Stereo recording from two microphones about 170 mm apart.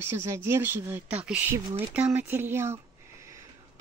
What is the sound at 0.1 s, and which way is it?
Speech, 15° right (ahead or behind).